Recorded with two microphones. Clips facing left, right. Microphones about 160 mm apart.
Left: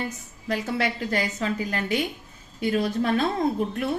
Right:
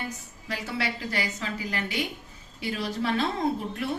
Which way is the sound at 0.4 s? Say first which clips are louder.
Left 5 dB; 45° left (ahead or behind).